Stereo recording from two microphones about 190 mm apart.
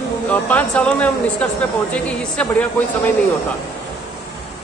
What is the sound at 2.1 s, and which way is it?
Speech, 5° left (ahead or behind).